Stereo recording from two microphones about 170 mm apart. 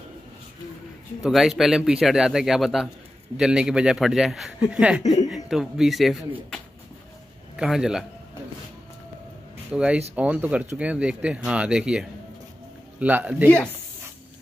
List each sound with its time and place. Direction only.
1.2 s a man's voice: centre (ahead or behind)
9.7 s speech: 5° right (ahead or behind)